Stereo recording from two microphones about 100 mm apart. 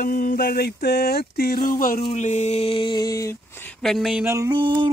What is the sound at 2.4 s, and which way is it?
Music, 80° left.